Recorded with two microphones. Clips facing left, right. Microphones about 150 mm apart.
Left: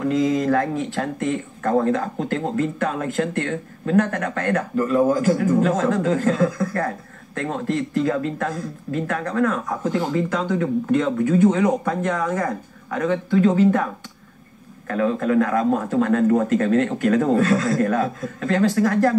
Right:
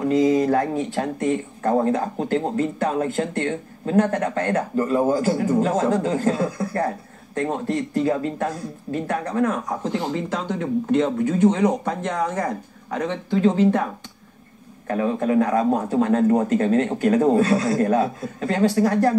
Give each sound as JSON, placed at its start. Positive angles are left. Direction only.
{"t": 0.0, "sound": "speech", "side_deg": -35}
{"t": 8.0, "sound": "speech", "side_deg": -30}
{"t": 14.9, "sound": "speech", "side_deg": -25}